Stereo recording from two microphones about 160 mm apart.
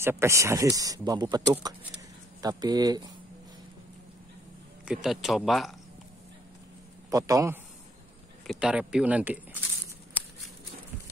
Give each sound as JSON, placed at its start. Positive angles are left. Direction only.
{"t": 0.0, "sound": "speech", "side_deg": -15}
{"t": 4.8, "sound": "speech", "side_deg": 0}
{"t": 7.1, "sound": "speech", "side_deg": -20}
{"t": 8.5, "sound": "speech", "side_deg": -5}